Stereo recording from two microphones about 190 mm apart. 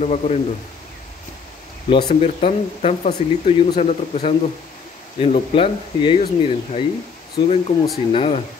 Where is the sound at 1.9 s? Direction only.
25° left (ahead or behind).